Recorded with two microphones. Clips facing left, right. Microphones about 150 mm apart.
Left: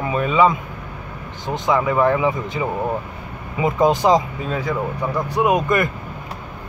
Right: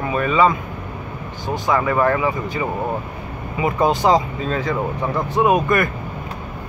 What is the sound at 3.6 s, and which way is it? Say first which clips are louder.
Speech: left 1 dB; 20° left (ahead or behind).